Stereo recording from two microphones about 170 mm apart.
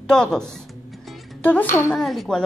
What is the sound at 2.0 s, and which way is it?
Speech, centre (ahead or behind).